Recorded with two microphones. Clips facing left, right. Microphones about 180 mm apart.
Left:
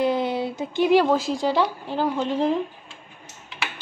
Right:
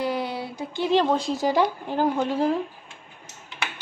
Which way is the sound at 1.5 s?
15° right (ahead or behind).